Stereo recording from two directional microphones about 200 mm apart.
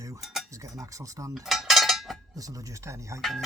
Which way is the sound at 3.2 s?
Centre (ahead or behind).